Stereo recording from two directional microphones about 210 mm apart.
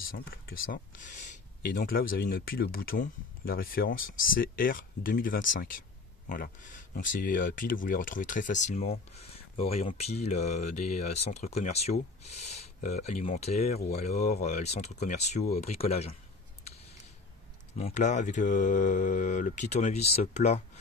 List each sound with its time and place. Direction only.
0.0 s speech: 45° left (ahead or behind); by 16.2 s 30° left (ahead or behind)
17.7 s speech: 35° left (ahead or behind)